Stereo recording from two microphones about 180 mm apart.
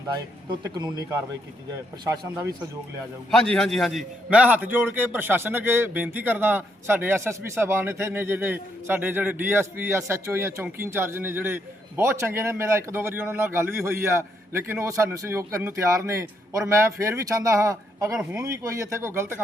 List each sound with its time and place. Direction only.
0.5 s a man's voice: 20° right (ahead or behind)
3.3 s a man's voice: 5° left (ahead or behind); by 19.4 s 15° right (ahead or behind)